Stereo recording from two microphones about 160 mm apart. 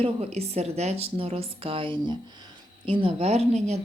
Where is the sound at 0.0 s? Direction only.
40° right (ahead or behind).